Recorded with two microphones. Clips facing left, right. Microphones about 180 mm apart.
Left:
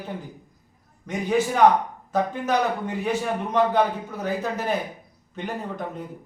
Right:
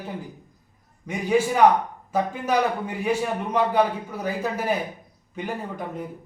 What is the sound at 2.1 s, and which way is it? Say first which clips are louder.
A man's voice: left 1 dB; 10° right (ahead or behind).